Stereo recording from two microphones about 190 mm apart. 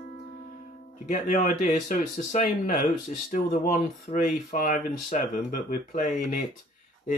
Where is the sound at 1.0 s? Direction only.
45° left (ahead or behind).